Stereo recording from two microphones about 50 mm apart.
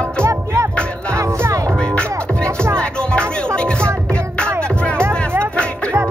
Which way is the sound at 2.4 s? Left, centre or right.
Right.